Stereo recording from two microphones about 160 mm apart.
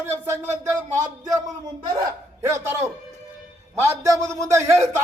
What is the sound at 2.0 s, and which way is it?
A man's voice, 15° right (ahead or behind).